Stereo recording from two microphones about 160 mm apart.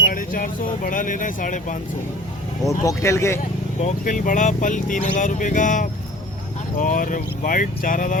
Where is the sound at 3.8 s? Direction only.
50° left (ahead or behind).